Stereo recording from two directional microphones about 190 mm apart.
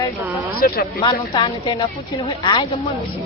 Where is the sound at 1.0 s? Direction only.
25° left (ahead or behind).